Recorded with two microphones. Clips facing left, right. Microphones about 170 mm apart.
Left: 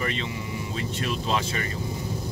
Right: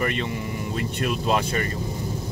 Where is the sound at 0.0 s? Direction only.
55° right (ahead or behind).